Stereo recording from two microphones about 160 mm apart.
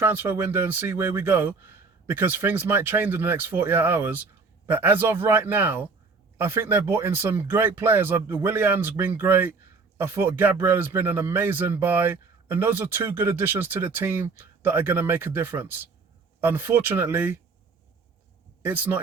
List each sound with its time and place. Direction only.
0.0 s speech: 15° right (ahead or behind)
18.6 s speech: 15° right (ahead or behind)